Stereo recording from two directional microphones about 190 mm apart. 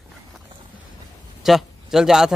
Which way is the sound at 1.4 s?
Centre (ahead or behind).